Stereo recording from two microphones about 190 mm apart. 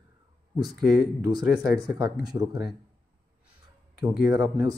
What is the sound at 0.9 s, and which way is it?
Speech, 20° right (ahead or behind).